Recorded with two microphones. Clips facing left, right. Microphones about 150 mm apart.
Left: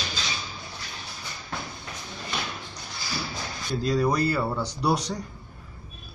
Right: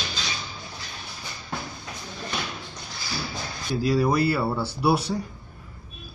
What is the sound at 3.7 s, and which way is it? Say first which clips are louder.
Speech: right 2 dB; 5° right (ahead or behind).